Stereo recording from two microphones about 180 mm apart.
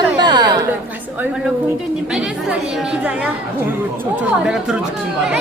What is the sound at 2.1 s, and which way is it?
Speech, 5° right (ahead or behind).